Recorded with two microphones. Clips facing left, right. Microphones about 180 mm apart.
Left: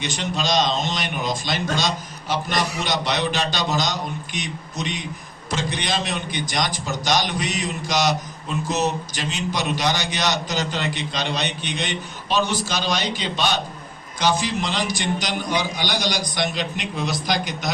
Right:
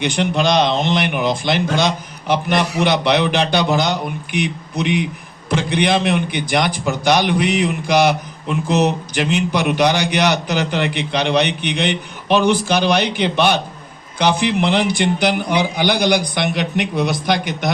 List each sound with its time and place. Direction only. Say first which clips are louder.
0.0 s a man's voice: right 8 dB; 60° right (ahead or behind)